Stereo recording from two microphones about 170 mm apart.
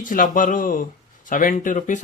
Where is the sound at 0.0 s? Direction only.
55° left (ahead or behind).